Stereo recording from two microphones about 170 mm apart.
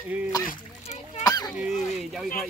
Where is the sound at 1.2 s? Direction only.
20° left (ahead or behind).